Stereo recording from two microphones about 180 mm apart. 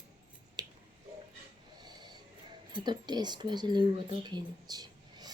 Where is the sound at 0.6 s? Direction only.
20° right (ahead or behind).